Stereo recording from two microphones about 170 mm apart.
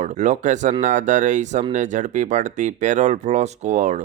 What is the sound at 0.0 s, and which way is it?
Speech, 45° right (ahead or behind).